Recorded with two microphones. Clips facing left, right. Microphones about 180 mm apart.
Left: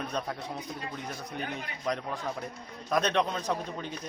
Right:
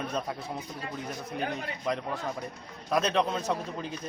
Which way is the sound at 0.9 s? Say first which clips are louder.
Right 3 dB; centre (ahead or behind).